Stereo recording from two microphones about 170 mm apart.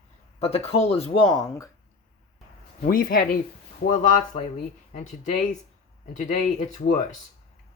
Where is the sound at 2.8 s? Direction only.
55° left (ahead or behind).